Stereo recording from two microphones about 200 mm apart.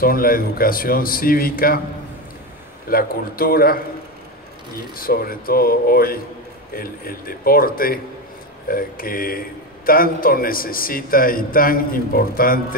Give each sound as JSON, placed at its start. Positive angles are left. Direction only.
{"t": 0.0, "sound": "a man's voice", "side_deg": 45}
{"t": 2.9, "sound": "a man's voice", "side_deg": 45}